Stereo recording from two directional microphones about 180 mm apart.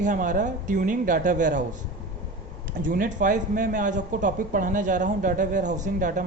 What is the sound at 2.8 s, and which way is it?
Speech, 50° right (ahead or behind).